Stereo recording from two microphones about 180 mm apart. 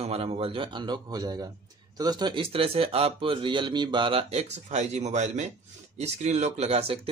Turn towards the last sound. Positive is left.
turn(degrees=-30)  # may be behind; listen again after turning